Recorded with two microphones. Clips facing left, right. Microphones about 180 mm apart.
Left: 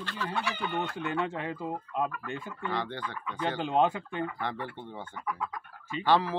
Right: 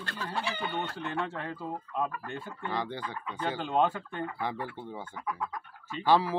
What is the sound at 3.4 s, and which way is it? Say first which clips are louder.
Speech: left 1 dB; 15° left (ahead or behind).